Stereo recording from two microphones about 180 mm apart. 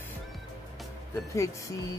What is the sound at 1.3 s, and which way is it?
Speech, 15° left (ahead or behind).